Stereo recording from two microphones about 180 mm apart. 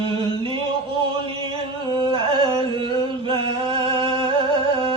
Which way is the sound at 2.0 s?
30° right (ahead or behind).